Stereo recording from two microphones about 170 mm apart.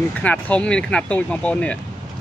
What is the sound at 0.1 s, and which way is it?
Speech, 10° left (ahead or behind).